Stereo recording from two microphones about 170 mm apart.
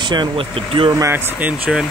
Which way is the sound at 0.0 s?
25° right (ahead or behind).